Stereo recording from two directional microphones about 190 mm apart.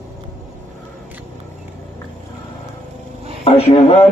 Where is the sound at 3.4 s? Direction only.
35° left (ahead or behind).